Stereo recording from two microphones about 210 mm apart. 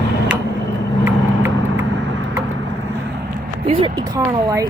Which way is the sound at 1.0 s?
10° right (ahead or behind).